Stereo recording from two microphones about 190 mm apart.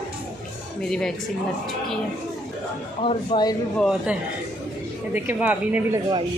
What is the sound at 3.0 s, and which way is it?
Speech, 30° left (ahead or behind).